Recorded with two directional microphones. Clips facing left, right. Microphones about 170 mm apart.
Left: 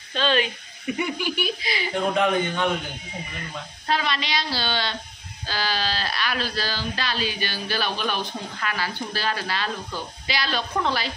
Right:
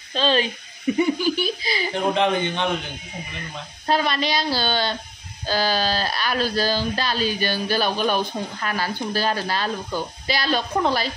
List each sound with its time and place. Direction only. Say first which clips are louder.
0.1 s speech: right 2 dB; 35° right (ahead or behind)
2.1 s a man's voice: left 1 dB; 25° right (ahead or behind)
3.8 s speech: right 4 dB; 45° right (ahead or behind)